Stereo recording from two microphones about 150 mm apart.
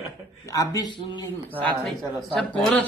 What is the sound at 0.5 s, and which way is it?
Speech, 25° left (ahead or behind).